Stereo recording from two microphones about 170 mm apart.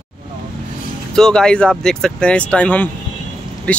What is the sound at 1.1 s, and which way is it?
Speech, 5° left (ahead or behind).